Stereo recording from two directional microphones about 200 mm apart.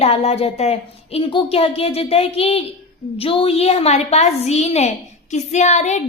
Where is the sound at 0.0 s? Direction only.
30° left (ahead or behind).